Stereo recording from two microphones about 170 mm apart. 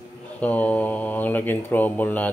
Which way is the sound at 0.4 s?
10° left (ahead or behind).